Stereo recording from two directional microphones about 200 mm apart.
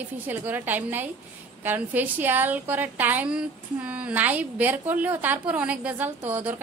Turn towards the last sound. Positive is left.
turn(degrees=-10)  # may be behind; listen again after turning